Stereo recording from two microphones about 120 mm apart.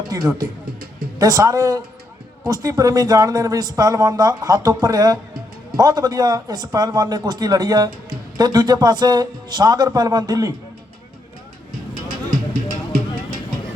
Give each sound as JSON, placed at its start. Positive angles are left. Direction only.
{"t": 0.1, "sound": "a man's voice", "side_deg": -30}